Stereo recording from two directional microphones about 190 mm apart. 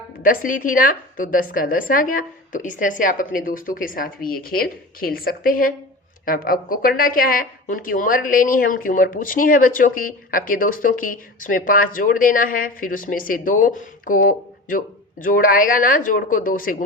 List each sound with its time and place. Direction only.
0.2 s a woman's voice: 45° left (ahead or behind)